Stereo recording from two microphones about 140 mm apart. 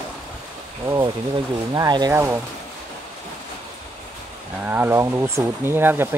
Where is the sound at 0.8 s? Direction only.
25° right (ahead or behind).